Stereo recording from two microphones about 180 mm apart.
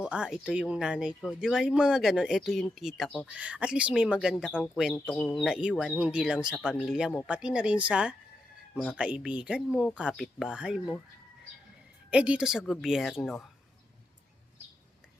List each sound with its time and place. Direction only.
0.0 s speech: 5° right (ahead or behind)
12.1 s speech: 5° right (ahead or behind)